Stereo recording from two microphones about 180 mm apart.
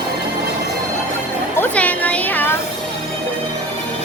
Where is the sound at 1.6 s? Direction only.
10° left (ahead or behind).